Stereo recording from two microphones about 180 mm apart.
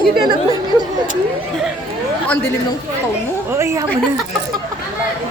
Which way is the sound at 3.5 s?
15° right (ahead or behind).